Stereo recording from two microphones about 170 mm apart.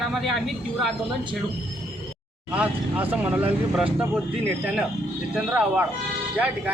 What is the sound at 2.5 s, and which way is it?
Speech, 10° right (ahead or behind).